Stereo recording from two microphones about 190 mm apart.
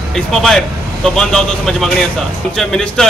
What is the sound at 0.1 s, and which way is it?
Speech, 5° left (ahead or behind).